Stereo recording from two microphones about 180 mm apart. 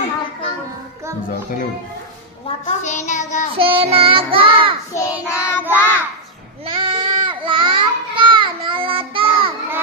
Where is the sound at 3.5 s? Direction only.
30° right (ahead or behind).